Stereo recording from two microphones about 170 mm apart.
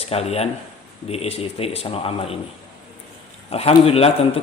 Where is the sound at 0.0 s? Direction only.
35° left (ahead or behind).